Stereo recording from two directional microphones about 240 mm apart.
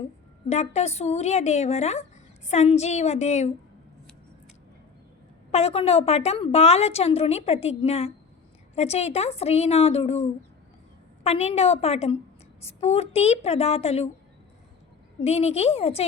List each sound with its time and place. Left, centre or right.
0.4 s a woman's voice: left
5.5 s a woman's voice: left
15.2 s a woman's voice: left